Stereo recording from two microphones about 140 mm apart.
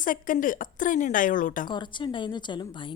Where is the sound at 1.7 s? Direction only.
35° left (ahead or behind).